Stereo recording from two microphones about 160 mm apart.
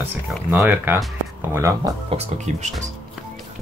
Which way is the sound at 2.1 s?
45° right (ahead or behind).